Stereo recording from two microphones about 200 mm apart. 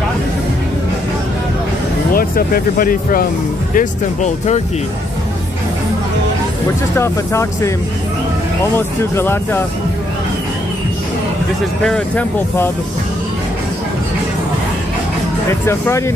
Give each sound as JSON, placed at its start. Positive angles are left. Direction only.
{"t": 2.1, "sound": "speech", "side_deg": 45}
{"t": 7.0, "sound": "speech", "side_deg": 15}
{"t": 8.7, "sound": "speech", "side_deg": 10}
{"t": 11.8, "sound": "speech", "side_deg": 5}